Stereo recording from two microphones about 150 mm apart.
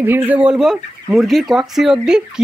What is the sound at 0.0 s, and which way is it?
Speech, 10° right (ahead or behind).